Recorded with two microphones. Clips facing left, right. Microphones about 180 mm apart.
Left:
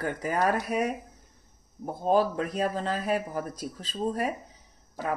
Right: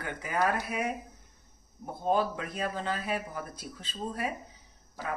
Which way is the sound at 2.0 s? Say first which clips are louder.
Left 4 dB; 40° left (ahead or behind).